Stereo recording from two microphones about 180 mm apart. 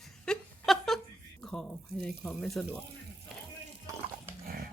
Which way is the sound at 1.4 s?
5° left (ahead or behind).